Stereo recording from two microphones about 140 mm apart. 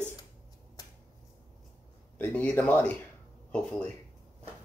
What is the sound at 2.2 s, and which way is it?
Speech, 10° left (ahead or behind).